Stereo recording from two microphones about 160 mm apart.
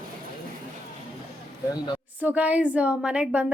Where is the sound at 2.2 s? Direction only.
10° right (ahead or behind).